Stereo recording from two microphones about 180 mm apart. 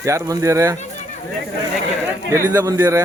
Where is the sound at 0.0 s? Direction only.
15° right (ahead or behind).